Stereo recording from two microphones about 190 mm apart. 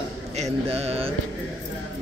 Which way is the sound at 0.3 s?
35° right (ahead or behind).